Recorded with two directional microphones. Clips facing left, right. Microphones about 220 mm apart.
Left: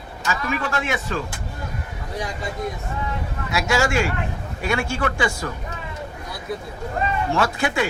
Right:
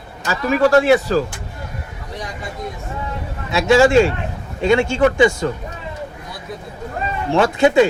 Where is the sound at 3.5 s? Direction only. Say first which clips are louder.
Right 9 dB; 30° right (ahead or behind).